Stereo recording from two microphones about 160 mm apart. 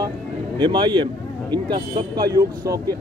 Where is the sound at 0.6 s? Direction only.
30° right (ahead or behind).